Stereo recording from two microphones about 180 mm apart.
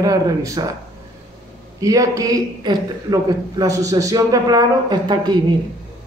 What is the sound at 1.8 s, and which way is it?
Speech, 20° right (ahead or behind).